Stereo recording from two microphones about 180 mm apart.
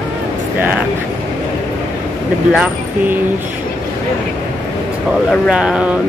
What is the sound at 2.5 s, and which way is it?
Speech, 5° right (ahead or behind).